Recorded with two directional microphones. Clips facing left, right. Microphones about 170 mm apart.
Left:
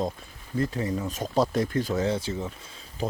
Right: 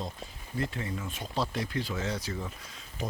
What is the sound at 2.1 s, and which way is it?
Speech, 25° left (ahead or behind).